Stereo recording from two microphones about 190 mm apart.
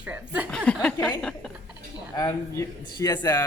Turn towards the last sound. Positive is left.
turn(degrees=20)  # may be behind; listen again after turning